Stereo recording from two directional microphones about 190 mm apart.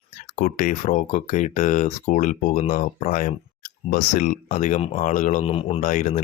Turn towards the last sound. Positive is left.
turn(degrees=40)  # may be behind; listen again after turning